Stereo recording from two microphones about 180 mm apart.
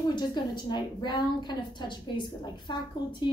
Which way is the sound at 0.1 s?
25° left (ahead or behind).